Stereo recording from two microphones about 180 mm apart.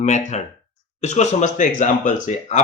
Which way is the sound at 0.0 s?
40° left (ahead or behind).